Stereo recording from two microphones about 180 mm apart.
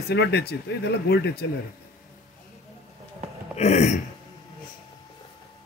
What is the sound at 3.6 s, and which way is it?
Speech, 40° left (ahead or behind).